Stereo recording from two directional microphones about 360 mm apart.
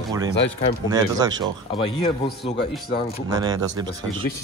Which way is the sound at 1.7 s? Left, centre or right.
Centre.